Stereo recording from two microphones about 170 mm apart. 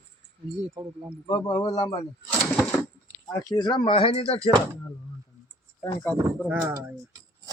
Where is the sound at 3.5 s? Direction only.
25° left (ahead or behind).